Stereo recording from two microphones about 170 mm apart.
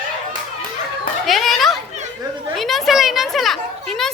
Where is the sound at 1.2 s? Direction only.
Centre (ahead or behind).